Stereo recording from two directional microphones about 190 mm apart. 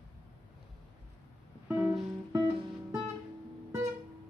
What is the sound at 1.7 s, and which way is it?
Music, 10° right (ahead or behind).